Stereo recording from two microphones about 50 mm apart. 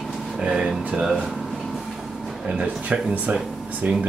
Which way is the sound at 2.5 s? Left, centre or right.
Right.